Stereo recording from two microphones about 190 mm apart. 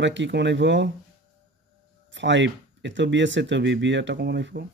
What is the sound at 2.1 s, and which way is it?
Speech, 70° right (ahead or behind).